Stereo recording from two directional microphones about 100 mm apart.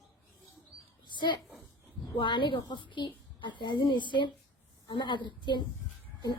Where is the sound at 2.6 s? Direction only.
45° left (ahead or behind).